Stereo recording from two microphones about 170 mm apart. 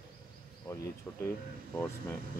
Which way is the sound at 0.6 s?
20° left (ahead or behind).